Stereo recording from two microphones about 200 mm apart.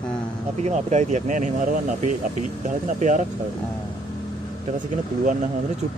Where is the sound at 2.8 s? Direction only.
40° right (ahead or behind).